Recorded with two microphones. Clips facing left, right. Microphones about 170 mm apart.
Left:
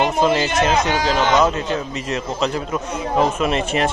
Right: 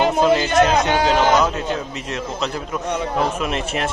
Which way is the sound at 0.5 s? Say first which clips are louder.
Right 2 dB; 50° right (ahead or behind).